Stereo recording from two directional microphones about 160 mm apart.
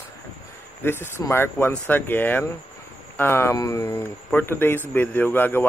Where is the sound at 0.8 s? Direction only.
15° left (ahead or behind).